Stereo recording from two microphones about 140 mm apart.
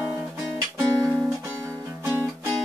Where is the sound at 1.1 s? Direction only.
Centre (ahead or behind).